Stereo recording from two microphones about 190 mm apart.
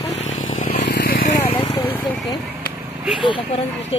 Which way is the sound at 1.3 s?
15° left (ahead or behind).